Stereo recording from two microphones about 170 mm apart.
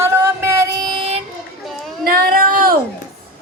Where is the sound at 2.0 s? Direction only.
60° right (ahead or behind).